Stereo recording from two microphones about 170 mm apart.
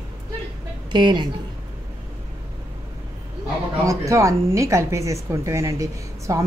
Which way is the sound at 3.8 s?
20° right (ahead or behind).